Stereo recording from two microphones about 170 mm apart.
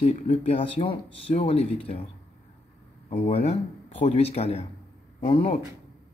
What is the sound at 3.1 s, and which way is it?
Speech, 35° left (ahead or behind).